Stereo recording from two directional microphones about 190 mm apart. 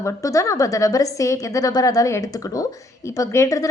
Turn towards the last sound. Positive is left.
turn(degrees=15)  # may be behind; listen again after turning